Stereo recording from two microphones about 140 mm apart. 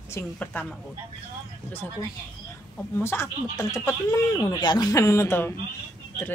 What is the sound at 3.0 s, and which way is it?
Speech, 20° left (ahead or behind).